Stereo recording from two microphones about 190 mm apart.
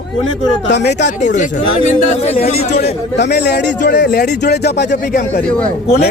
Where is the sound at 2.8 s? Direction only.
60° left (ahead or behind).